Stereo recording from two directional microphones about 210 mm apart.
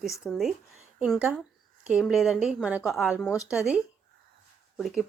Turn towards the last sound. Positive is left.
turn(degrees=0)  # may be behind; listen again after turning